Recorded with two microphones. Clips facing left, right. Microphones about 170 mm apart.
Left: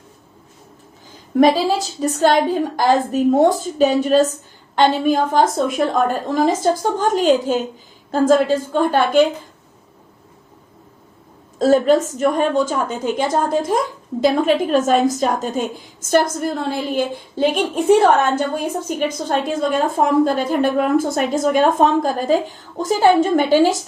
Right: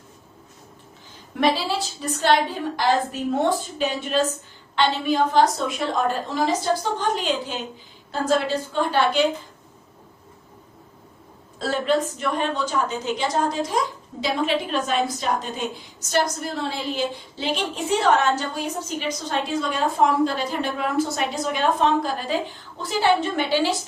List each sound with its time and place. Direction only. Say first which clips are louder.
1.4 s a woman's voice: left 8 dB; 45° left (ahead or behind)
11.6 s a woman's voice: left 9 dB; 45° left (ahead or behind)